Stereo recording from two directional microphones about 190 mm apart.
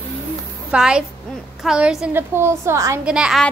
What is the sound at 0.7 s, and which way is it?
A woman's voice, 5° right (ahead or behind).